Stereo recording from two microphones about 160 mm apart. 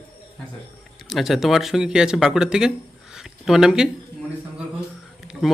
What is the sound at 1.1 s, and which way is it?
Speech, centre (ahead or behind).